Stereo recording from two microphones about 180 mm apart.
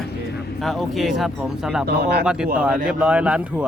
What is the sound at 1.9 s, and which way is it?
Speech, 65° right (ahead or behind).